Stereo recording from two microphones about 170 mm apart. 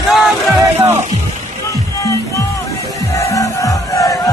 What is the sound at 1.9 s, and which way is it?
Music, 20° left (ahead or behind).